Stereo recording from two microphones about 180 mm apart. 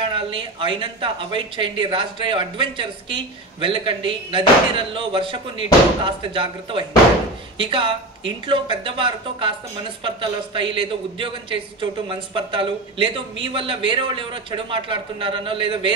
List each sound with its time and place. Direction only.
0.0 s speech: 30° right (ahead or behind)